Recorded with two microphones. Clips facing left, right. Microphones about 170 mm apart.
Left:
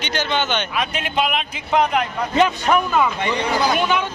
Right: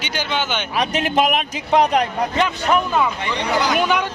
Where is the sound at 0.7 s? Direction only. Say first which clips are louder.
Right 8 dB; 40° right (ahead or behind).